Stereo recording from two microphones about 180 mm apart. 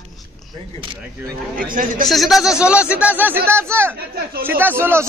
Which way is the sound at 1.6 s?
50° right (ahead or behind).